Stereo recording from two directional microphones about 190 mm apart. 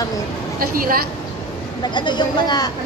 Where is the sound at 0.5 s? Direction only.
50° right (ahead or behind).